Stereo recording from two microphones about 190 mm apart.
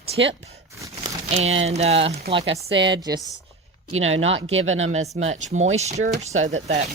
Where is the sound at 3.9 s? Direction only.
90° right.